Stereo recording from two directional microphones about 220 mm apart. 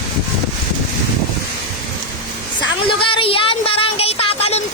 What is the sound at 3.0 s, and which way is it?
Speech, 25° left (ahead or behind).